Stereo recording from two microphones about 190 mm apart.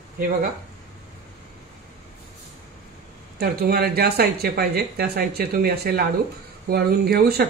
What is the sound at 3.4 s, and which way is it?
Speech, 55° right (ahead or behind).